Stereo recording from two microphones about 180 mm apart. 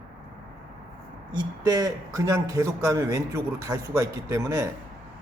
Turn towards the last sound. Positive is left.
turn(degrees=-20)  # may be behind; listen again after turning